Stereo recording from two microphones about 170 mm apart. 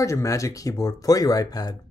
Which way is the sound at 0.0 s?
20° left (ahead or behind).